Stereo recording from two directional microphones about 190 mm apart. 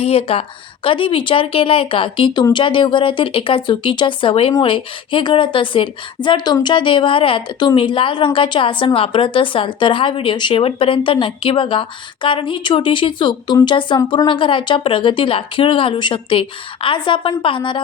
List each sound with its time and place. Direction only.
0.0 s a woman's voice: 30° left (ahead or behind)